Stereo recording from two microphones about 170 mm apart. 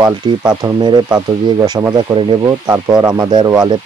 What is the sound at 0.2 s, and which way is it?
Speech, 25° right (ahead or behind).